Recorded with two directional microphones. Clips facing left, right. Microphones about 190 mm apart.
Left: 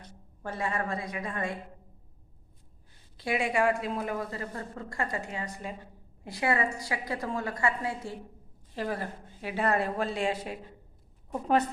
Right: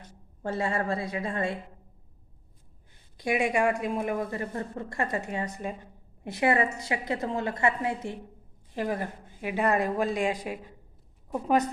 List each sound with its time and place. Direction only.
0.4 s speech: 30° right (ahead or behind)
3.2 s a woman's voice: 15° right (ahead or behind)